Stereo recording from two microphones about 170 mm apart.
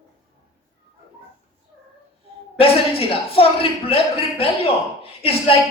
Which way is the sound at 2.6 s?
35° left (ahead or behind).